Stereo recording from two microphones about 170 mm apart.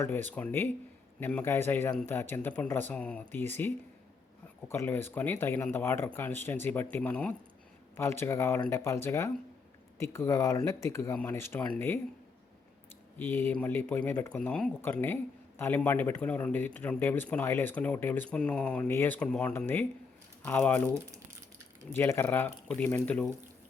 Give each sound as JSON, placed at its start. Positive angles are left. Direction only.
{"t": 0.0, "sound": "speech", "side_deg": 15}
{"t": 4.7, "sound": "speech", "side_deg": 15}
{"t": 13.1, "sound": "speech", "side_deg": 15}
{"t": 21.9, "sound": "speech", "side_deg": 15}